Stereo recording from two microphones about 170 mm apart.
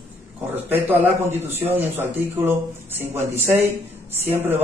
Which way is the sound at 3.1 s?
40° right (ahead or behind).